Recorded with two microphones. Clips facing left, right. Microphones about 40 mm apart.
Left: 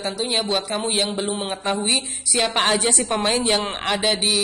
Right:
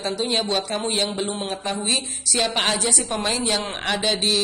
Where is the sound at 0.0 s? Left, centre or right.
Centre.